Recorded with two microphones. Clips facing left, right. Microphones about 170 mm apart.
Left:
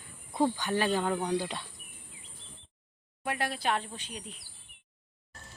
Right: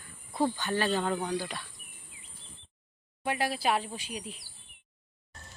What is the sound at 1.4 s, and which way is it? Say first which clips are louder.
Speech: left 2 dB; 20° left (ahead or behind).